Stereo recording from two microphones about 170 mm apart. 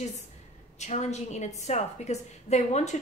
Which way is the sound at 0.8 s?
40° left (ahead or behind).